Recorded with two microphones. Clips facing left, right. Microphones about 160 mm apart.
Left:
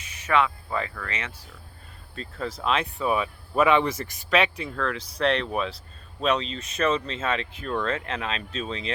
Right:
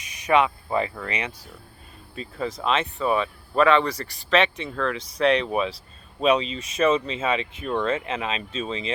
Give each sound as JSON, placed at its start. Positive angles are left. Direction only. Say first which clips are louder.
{"t": 0.0, "sound": "speech", "louder": "right 3 dB", "side_deg": -15}
{"t": 2.6, "sound": "speech", "louder": "right 1 dB", "side_deg": 0}